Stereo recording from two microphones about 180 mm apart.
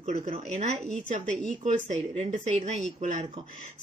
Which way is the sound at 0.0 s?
35° right (ahead or behind).